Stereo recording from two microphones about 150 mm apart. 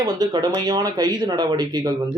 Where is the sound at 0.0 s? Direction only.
25° right (ahead or behind).